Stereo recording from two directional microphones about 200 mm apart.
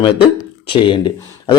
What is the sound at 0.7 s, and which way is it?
Speech, 25° left (ahead or behind).